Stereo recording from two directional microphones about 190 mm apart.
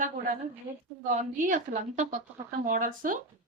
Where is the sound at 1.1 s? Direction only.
40° right (ahead or behind).